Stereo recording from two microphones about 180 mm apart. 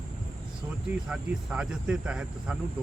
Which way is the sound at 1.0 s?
5° right (ahead or behind).